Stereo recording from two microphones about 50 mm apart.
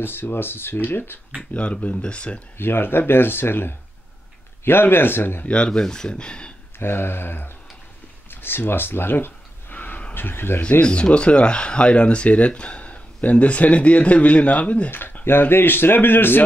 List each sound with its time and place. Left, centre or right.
0.0 s speech: left
1.4 s speech: left
2.5 s speech: left
5.7 s speech: centre
6.8 s speech: left
8.3 s a sound: left
10.1 s speech: left
10.8 s speech: left
14.9 s speech: left